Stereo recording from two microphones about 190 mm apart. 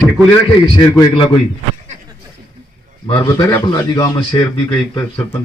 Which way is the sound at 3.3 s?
20° left (ahead or behind).